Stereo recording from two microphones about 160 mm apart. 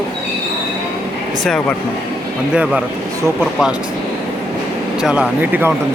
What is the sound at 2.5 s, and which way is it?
Speech, 5° right (ahead or behind).